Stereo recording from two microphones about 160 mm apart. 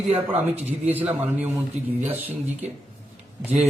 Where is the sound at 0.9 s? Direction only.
10° right (ahead or behind).